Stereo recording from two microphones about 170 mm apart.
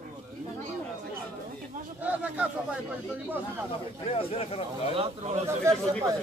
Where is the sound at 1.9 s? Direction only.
10° right (ahead or behind).